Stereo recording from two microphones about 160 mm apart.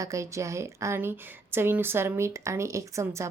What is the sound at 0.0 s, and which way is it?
A woman's voice, 20° right (ahead or behind).